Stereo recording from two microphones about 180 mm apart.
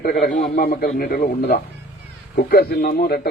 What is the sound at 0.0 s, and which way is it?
A man's voice, 50° left (ahead or behind).